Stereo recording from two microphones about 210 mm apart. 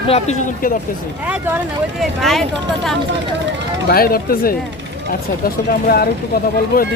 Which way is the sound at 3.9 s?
45° left (ahead or behind).